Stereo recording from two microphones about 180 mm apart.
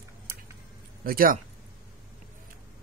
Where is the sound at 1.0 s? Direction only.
55° right (ahead or behind).